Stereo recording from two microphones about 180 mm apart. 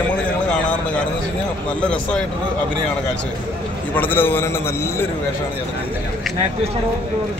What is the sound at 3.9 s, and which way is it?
A man's voice, 10° left (ahead or behind).